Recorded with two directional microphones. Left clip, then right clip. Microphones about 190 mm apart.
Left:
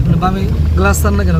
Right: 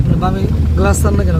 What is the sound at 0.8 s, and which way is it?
Speech, 10° right (ahead or behind).